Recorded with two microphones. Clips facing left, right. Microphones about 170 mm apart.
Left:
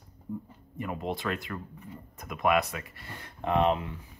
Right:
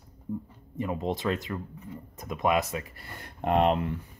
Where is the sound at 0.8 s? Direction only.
25° right (ahead or behind).